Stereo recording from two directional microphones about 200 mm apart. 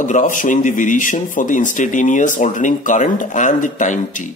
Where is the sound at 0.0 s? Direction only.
40° left (ahead or behind).